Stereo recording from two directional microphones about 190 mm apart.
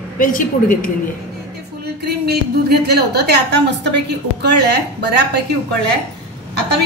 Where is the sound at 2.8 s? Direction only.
60° right (ahead or behind).